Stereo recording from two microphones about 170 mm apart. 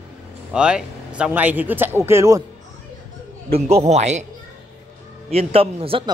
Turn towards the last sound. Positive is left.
turn(degrees=-35)  # may be behind; listen again after turning